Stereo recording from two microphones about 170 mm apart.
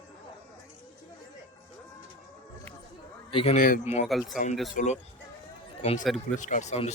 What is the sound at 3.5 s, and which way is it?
Speech, 55° left (ahead or behind).